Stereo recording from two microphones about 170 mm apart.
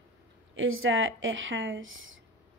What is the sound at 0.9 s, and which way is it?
Speech, 90° right.